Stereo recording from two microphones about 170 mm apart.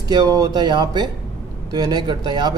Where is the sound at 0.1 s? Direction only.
20° right (ahead or behind).